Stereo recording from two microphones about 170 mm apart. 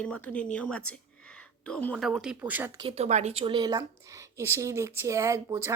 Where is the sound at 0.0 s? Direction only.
5° left (ahead or behind); by 2.7 s 10° right (ahead or behind).